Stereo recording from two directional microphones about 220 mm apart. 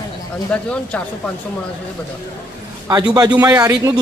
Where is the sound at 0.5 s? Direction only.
5° left (ahead or behind).